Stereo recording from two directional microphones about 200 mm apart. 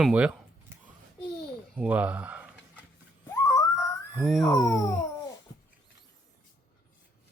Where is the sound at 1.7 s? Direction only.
5° right (ahead or behind).